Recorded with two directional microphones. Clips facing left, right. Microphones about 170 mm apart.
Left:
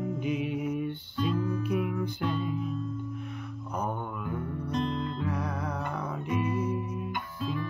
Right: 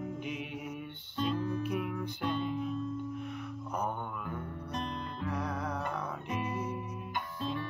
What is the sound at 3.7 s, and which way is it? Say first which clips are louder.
Mantra: left 3 dB; 5° left (ahead or behind).